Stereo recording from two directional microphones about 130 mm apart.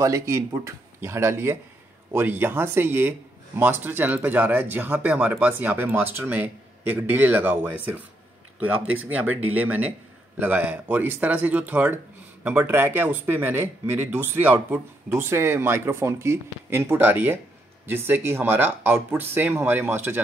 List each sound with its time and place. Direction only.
0.0 s speech: 25° right (ahead or behind)